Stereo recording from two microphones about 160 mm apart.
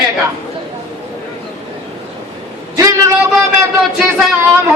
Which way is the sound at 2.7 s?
20° right (ahead or behind).